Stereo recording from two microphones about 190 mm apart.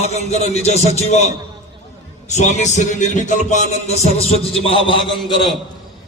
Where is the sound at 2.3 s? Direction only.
40° left (ahead or behind).